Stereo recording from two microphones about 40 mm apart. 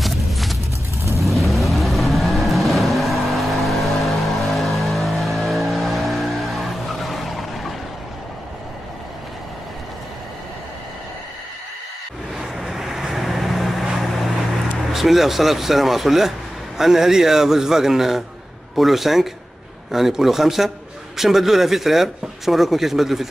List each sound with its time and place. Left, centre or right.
0.0 s vehicle: centre
12.4 s vehicle: centre
13.9 s boat: centre
14.9 s a man's voice: centre